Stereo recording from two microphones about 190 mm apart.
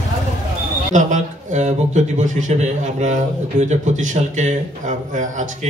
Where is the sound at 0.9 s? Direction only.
40° right (ahead or behind).